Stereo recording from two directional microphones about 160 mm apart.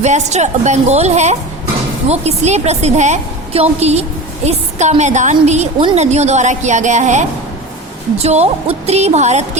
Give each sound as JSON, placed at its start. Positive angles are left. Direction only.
{"t": 0.0, "sound": "a woman's voice", "side_deg": -45}